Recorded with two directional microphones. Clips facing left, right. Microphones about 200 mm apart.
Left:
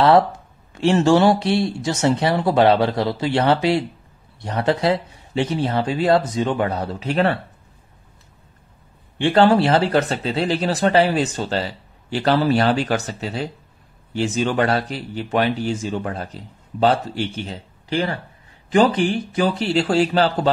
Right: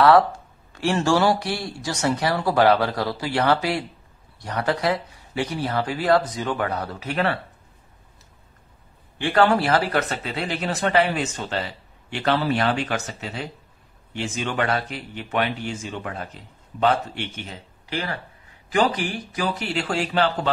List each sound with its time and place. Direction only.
0.0 s speech: 25° left (ahead or behind)
9.2 s speech: 30° left (ahead or behind)